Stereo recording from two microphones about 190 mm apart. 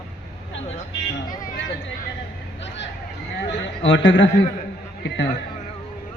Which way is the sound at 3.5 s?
70° left (ahead or behind).